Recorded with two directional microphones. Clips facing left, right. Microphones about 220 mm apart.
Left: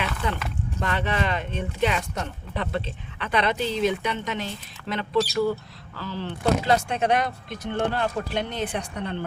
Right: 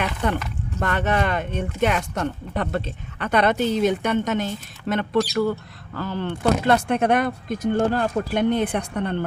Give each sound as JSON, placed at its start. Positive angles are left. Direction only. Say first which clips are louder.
{"t": 0.8, "sound": "speech", "louder": "right 4 dB", "side_deg": -50}